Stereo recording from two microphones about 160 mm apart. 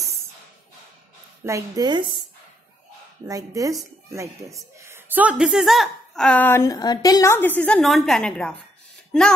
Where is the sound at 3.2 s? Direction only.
20° right (ahead or behind).